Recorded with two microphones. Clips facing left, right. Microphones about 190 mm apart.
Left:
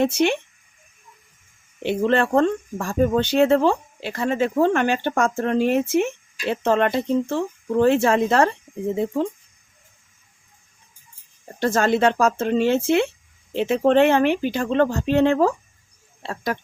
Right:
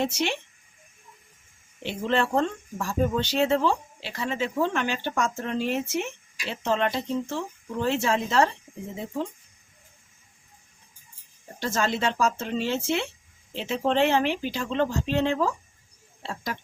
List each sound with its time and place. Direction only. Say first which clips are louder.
0.0 s speech: left 8 dB; 55° left (ahead or behind)
1.8 s speech: left 6 dB; 60° left (ahead or behind)
11.6 s speech: left 8 dB; 55° left (ahead or behind)